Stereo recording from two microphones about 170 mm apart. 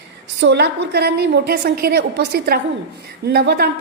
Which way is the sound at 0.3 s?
85° right.